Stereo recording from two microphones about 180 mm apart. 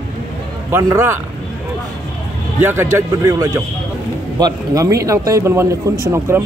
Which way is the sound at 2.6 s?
15° right (ahead or behind).